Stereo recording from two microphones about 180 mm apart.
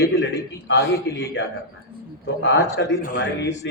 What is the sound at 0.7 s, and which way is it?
A man's voice, 90° left.